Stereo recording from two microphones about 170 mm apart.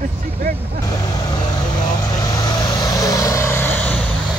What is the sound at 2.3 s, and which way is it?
Vehicle, 20° left (ahead or behind).